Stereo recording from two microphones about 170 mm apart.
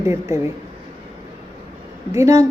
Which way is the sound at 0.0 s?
15° right (ahead or behind).